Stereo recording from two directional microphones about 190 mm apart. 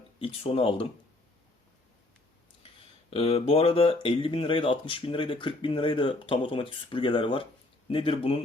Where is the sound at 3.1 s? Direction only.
30° left (ahead or behind).